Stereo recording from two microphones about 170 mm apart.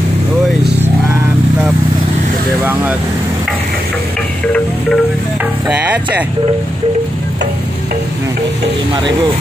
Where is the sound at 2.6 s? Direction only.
10° right (ahead or behind).